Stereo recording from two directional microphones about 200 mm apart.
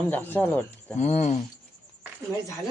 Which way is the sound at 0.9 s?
35° left (ahead or behind).